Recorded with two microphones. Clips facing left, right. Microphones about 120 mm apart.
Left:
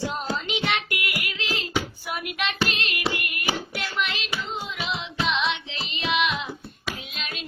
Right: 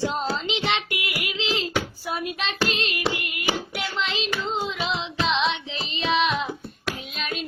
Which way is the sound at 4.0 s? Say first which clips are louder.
Right 1 dB; 30° right (ahead or behind).